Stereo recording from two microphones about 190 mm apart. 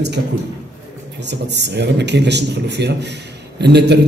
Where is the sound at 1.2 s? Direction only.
65° right (ahead or behind).